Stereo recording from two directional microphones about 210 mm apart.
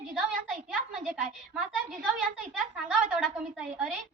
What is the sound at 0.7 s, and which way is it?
A woman's voice, 5° right (ahead or behind).